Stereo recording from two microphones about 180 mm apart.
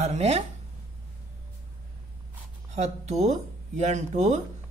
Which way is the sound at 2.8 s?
40° right (ahead or behind).